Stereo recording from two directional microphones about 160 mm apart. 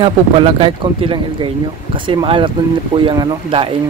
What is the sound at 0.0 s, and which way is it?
Speech, 35° right (ahead or behind).